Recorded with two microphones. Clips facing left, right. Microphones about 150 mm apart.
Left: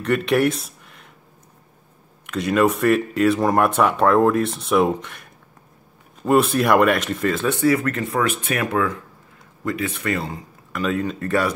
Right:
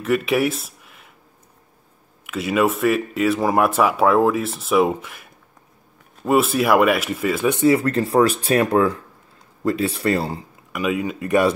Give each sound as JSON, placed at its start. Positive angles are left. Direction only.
{"t": 0.0, "sound": "speech", "side_deg": -5}
{"t": 2.2, "sound": "speech", "side_deg": -5}
{"t": 10.7, "sound": "speech", "side_deg": -10}